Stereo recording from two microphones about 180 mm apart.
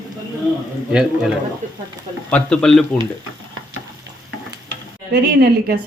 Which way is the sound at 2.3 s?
5° left (ahead or behind).